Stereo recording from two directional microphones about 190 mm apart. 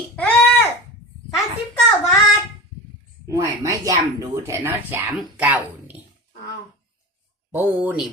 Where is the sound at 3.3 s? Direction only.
15° right (ahead or behind).